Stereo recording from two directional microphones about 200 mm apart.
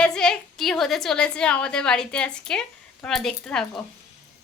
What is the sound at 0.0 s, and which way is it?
A woman's voice, 5° left (ahead or behind).